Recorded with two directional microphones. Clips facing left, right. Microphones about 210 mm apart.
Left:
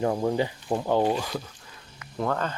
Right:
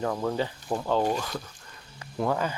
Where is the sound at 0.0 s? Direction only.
25° left (ahead or behind).